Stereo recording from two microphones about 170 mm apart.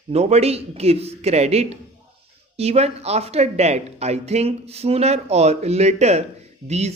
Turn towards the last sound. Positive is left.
turn(degrees=-40)  # may be behind; listen again after turning